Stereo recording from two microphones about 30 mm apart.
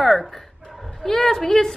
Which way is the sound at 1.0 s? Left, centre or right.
Centre.